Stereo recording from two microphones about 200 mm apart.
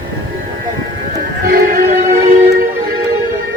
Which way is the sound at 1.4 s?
45° right (ahead or behind).